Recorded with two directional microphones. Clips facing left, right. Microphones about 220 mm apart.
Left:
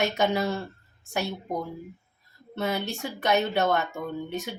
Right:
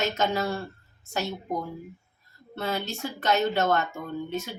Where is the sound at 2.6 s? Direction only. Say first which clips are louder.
Left 1 dB; 15° left (ahead or behind).